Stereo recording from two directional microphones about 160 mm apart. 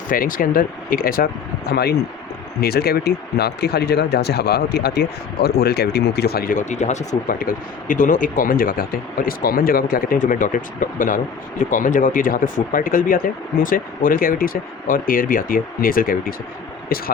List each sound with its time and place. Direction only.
0.1 s speech: 60° left (ahead or behind)
1.7 s speech: 85° left; by 7.0 s 45° left (ahead or behind)
7.1 s speech: 60° left (ahead or behind)